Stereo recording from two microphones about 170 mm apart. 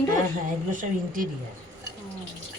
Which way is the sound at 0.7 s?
50° right (ahead or behind).